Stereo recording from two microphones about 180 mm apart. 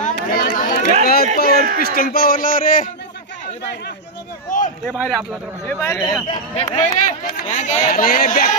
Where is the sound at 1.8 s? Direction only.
55° left (ahead or behind).